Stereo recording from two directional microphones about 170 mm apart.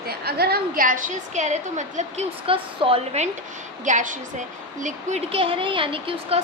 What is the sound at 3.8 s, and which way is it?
A woman's voice, 45° right (ahead or behind).